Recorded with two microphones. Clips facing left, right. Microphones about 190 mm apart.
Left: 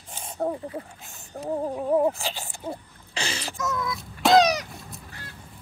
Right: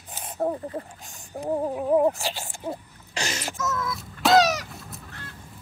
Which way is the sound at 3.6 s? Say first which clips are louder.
Left 1 dB; centre (ahead or behind).